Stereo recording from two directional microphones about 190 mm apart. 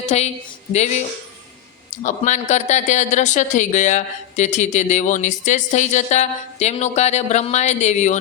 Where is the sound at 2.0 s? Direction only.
40° left (ahead or behind).